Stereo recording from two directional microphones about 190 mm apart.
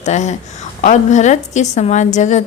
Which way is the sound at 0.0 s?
40° left (ahead or behind).